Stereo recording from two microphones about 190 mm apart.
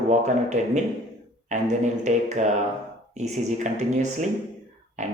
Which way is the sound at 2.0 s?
40° right (ahead or behind).